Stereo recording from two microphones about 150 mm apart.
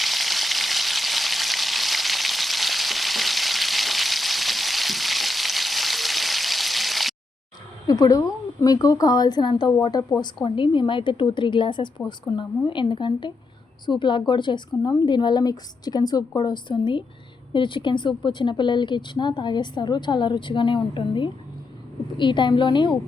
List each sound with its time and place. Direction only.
0.0 s frying: centre (ahead or behind)
7.9 s a woman's voice: 25° left (ahead or behind)